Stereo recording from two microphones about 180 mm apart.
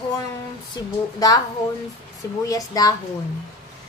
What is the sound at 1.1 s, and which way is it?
Speech, 20° left (ahead or behind).